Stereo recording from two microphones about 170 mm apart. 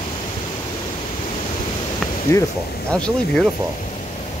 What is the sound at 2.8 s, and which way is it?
Speech, 5° left (ahead or behind).